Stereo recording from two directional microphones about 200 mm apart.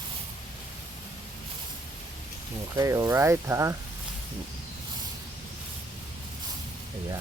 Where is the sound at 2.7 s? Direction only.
15° right (ahead or behind).